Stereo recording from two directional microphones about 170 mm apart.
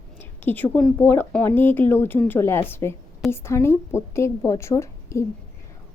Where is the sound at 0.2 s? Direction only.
10° left (ahead or behind).